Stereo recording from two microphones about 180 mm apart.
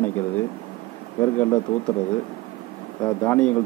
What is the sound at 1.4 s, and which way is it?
Speech, 5° left (ahead or behind).